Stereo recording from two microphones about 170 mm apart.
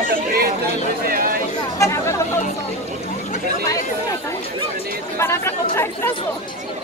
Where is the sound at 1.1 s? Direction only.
55° right (ahead or behind).